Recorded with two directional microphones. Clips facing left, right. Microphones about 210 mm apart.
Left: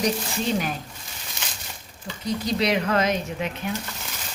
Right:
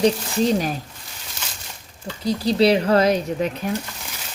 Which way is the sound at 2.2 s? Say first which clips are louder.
Right 7 dB; 35° right (ahead or behind).